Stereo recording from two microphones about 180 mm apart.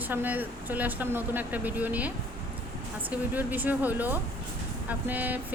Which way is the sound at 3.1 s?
10° right (ahead or behind).